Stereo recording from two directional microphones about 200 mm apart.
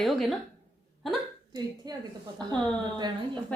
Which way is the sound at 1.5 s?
20° right (ahead or behind).